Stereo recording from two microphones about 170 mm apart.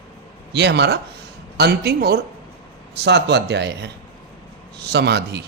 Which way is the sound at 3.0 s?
85° right.